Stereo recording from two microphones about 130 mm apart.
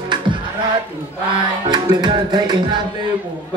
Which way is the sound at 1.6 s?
35° right (ahead or behind).